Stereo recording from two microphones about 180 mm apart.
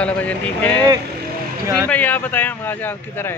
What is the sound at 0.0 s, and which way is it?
Speech, 10° left (ahead or behind).